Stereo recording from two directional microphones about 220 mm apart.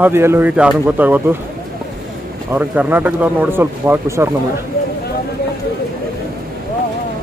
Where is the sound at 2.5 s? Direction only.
10° right (ahead or behind).